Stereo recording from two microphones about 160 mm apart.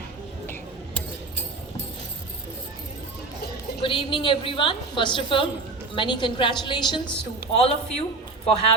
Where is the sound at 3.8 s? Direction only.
30° left (ahead or behind).